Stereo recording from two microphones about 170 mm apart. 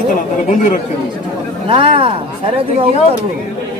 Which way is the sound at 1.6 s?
30° right (ahead or behind).